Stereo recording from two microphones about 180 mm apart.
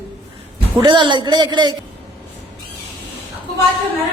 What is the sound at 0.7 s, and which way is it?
Speech, 25° right (ahead or behind).